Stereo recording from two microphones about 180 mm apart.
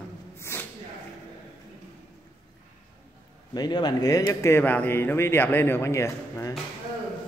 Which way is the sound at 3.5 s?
25° left (ahead or behind).